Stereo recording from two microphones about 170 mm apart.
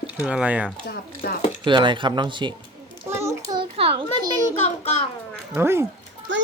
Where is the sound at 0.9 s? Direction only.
65° left (ahead or behind).